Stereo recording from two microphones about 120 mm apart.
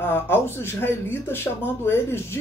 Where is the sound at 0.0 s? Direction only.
20° left (ahead or behind).